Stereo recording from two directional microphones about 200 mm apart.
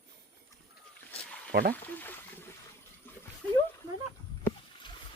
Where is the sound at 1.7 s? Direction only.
10° left (ahead or behind).